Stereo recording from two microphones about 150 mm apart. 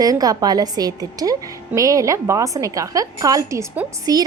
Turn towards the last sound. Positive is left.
turn(degrees=-20)  # may be behind; listen again after turning